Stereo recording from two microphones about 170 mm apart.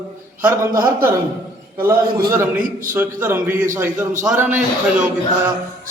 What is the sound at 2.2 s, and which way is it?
A man's voice, 15° right (ahead or behind).